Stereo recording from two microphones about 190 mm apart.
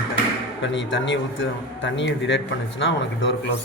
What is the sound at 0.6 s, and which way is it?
A man's voice, 75° left (ahead or behind).